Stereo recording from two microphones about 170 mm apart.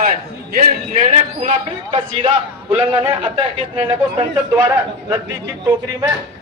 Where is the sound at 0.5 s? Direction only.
55° right (ahead or behind).